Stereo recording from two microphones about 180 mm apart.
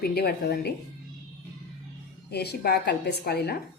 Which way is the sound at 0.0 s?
60° left (ahead or behind).